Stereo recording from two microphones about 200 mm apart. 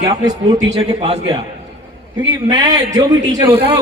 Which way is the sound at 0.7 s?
30° right (ahead or behind).